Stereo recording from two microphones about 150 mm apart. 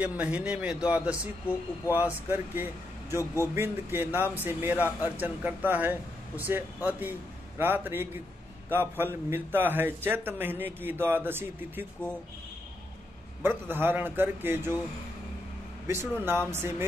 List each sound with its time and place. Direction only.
0.0 s a man's voice: 10° right (ahead or behind)
2.2 s a man's voice: 15° right (ahead or behind)
13.4 s a man's voice: 15° right (ahead or behind)
15.9 s a man's voice: 15° right (ahead or behind)